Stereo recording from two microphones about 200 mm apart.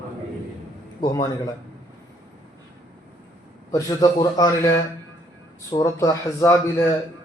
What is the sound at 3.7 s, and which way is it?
Speech, 15° left (ahead or behind).